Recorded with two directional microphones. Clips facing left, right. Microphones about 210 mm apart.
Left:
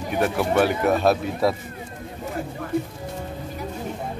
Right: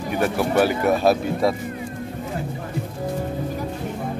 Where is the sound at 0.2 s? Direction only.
Centre (ahead or behind).